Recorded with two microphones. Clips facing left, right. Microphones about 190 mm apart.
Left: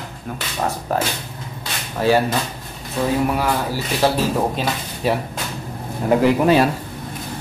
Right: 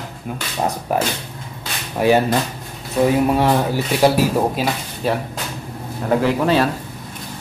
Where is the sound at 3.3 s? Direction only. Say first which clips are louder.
Right 4 dB; 25° right (ahead or behind).